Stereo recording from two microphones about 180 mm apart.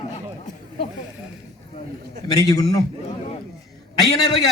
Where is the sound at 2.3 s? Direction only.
20° left (ahead or behind).